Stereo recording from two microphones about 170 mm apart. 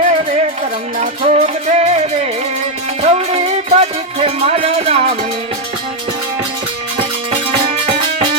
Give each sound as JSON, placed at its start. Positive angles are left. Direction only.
{"t": 0.0, "sound": "music", "side_deg": -45}